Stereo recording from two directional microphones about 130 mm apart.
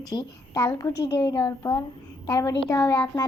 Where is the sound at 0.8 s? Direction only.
30° left (ahead or behind).